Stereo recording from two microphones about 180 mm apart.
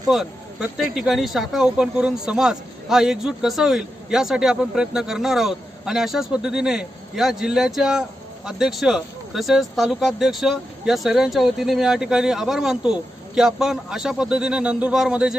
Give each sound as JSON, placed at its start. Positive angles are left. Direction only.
{"t": 0.1, "sound": "speech", "side_deg": 0}